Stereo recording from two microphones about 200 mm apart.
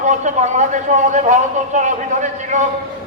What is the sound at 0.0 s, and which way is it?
A man's voice, 35° right (ahead or behind).